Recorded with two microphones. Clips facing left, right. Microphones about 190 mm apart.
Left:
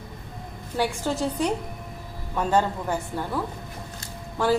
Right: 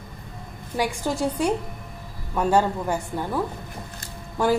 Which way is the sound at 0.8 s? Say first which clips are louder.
Right 1 dB; 10° right (ahead or behind).